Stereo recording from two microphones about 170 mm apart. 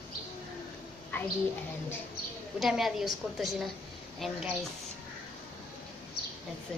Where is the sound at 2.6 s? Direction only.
Centre (ahead or behind).